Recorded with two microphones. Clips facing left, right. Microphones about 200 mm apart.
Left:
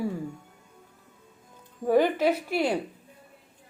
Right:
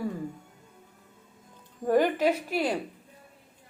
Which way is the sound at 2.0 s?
10° right (ahead or behind).